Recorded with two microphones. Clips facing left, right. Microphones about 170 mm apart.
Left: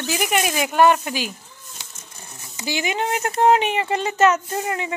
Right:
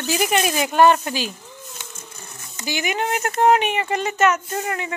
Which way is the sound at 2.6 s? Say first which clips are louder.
Even; 25° left (ahead or behind).